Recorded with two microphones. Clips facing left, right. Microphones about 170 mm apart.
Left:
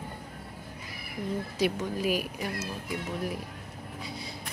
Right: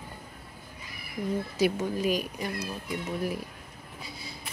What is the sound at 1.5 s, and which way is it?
Speech, centre (ahead or behind).